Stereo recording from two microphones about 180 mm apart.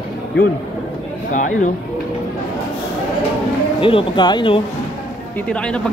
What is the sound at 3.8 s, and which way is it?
Speech, 30° left (ahead or behind).